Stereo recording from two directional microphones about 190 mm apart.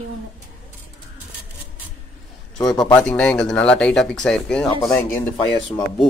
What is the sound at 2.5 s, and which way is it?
Speech, 20° left (ahead or behind).